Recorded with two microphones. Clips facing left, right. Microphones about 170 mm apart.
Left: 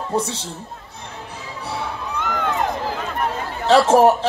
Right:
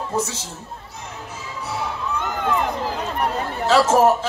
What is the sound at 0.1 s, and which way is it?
Speech, 35° left (ahead or behind).